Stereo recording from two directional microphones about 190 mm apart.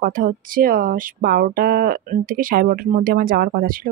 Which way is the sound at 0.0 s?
45° right (ahead or behind).